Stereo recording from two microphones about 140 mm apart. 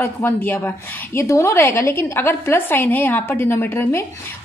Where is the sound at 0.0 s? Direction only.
15° left (ahead or behind).